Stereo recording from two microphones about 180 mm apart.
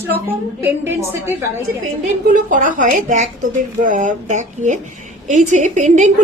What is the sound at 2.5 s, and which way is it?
A woman's voice, 45° right (ahead or behind).